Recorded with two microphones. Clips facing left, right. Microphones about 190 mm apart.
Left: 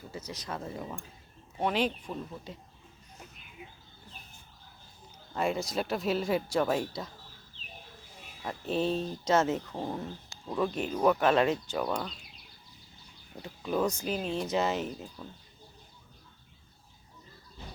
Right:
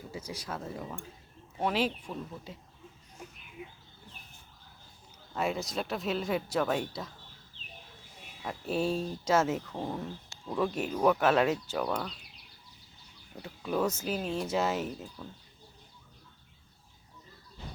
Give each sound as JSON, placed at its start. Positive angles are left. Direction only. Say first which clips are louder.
{"t": 0.1, "sound": "speech", "louder": "left 1 dB", "side_deg": -10}
{"t": 5.3, "sound": "speech", "louder": "left 2 dB", "side_deg": 0}
{"t": 8.4, "sound": "speech", "louder": "left 1 dB", "side_deg": -5}
{"t": 13.4, "sound": "speech", "louder": "left 1 dB", "side_deg": -5}